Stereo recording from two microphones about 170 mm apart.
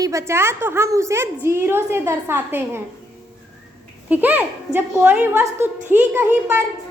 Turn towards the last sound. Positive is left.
turn(degrees=-10)  # may be behind; listen again after turning